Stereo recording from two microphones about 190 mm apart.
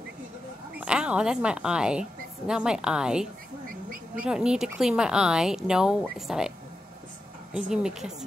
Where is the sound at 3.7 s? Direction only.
50° right (ahead or behind).